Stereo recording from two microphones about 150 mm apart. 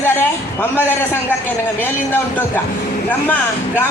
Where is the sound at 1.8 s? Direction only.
15° left (ahead or behind).